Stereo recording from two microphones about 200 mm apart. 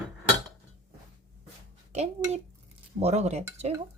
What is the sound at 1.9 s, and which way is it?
A woman's voice, 30° right (ahead or behind).